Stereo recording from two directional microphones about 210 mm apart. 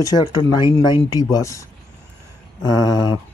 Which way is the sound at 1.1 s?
15° left (ahead or behind).